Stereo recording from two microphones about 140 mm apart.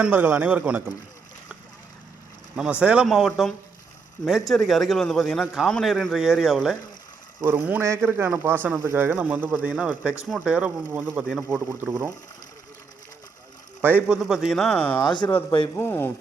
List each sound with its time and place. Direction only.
0.0 s speech: 15° right (ahead or behind)
2.8 s a man's voice: 5° right (ahead or behind)
7.4 s a man's voice: 15° right (ahead or behind); by 11.4 s centre (ahead or behind)
11.7 s speech: 15° right (ahead or behind)
13.8 s a man's voice: 15° right (ahead or behind); by 15.0 s 10° left (ahead or behind)
15.0 s speech: 30° left (ahead or behind)
15.3 s speech: 15° left (ahead or behind)